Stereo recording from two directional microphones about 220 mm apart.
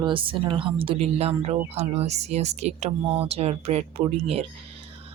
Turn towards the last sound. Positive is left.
turn(degrees=-25)  # may be behind; listen again after turning